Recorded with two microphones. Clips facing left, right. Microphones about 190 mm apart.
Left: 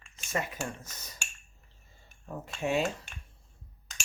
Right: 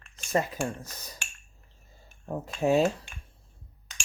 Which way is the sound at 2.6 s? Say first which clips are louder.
Right 6 dB; 35° right (ahead or behind).